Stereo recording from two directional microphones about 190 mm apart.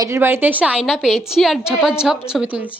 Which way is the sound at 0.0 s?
15° right (ahead or behind).